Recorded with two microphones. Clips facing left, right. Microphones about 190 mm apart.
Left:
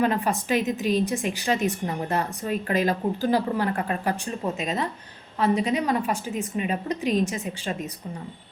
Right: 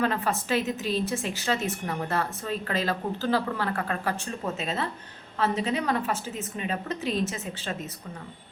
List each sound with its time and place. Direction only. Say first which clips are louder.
0.0 s a woman's voice: left 3 dB; 15° left (ahead or behind)